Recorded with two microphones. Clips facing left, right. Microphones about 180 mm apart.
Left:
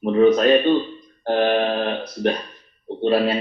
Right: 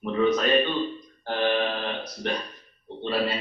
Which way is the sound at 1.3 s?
55° left (ahead or behind).